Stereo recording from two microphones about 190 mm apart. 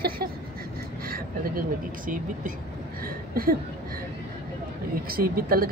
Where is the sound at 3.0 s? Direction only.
50° right (ahead or behind).